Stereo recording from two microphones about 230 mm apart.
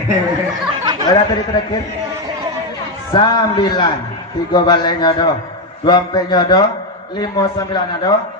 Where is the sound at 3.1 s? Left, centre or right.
Centre.